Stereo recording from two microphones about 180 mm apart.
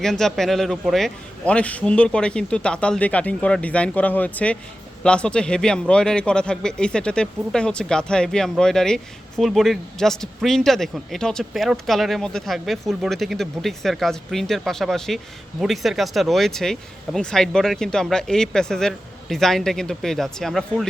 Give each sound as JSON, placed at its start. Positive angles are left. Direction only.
{"t": 0.0, "sound": "speech", "side_deg": 0}